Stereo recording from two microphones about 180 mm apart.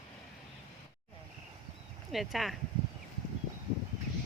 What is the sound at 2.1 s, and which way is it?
Speech, centre (ahead or behind).